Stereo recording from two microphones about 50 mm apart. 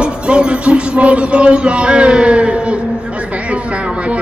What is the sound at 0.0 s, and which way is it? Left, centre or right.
Music, right.